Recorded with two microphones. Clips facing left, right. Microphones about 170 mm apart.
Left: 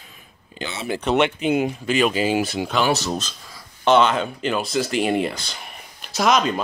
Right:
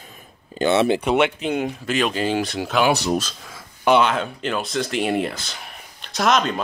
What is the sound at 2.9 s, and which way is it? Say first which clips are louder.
Speech: right 2 dB; 15° right (ahead or behind).